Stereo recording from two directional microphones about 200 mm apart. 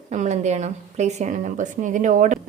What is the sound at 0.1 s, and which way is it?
Speech, 35° right (ahead or behind).